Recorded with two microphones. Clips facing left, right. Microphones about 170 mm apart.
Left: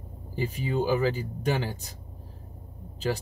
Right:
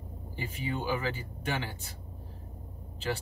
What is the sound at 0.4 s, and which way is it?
Speech, 40° left (ahead or behind).